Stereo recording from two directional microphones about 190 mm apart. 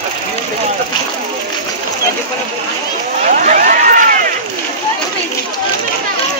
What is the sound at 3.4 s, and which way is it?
Run, 45° right (ahead or behind).